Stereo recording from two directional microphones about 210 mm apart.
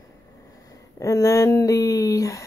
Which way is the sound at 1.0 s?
15° left (ahead or behind).